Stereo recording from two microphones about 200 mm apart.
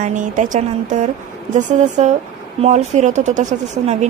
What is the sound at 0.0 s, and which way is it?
A woman's voice, 40° right (ahead or behind).